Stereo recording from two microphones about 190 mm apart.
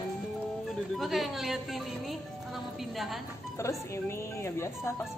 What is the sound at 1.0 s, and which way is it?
A woman's voice, centre (ahead or behind).